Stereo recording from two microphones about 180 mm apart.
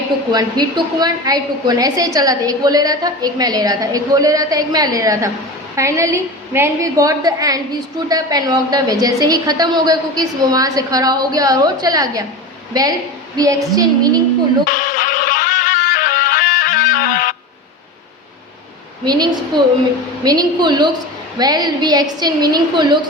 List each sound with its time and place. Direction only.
0.3 s a woman's voice: 20° right (ahead or behind)
14.7 s music: 45° left (ahead or behind)
19.0 s a woman's voice: 25° right (ahead or behind)